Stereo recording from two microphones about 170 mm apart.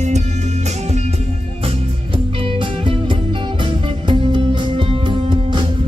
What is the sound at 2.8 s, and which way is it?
Music, 30° right (ahead or behind).